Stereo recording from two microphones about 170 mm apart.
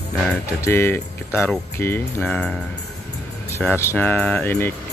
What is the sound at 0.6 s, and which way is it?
Speech, 15° left (ahead or behind).